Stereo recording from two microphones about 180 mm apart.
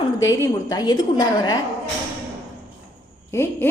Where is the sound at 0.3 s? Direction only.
20° left (ahead or behind).